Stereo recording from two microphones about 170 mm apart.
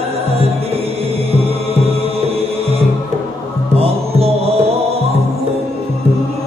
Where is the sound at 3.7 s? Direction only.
35° right (ahead or behind).